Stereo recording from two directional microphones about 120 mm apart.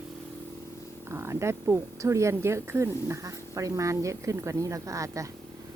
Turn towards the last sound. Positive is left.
turn(degrees=-25)  # may be behind; listen again after turning